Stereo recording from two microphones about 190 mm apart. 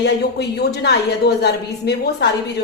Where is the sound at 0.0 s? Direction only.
60° left (ahead or behind).